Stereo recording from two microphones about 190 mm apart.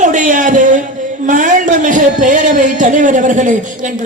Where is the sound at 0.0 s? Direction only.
40° right (ahead or behind).